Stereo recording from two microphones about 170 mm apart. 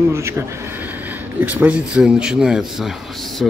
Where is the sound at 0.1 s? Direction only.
15° right (ahead or behind).